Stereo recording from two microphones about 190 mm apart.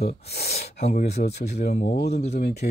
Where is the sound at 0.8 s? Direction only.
35° left (ahead or behind).